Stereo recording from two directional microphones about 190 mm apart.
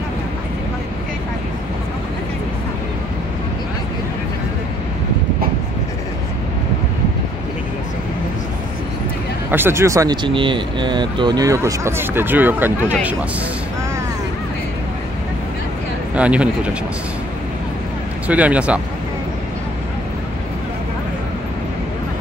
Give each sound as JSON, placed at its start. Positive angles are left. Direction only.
{"t": 9.5, "sound": "speech", "side_deg": -10}
{"t": 16.2, "sound": "speech", "side_deg": -5}
{"t": 18.2, "sound": "speech", "side_deg": -5}